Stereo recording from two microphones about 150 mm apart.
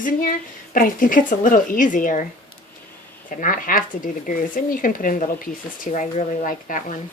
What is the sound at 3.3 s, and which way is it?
Speech, 65° left (ahead or behind).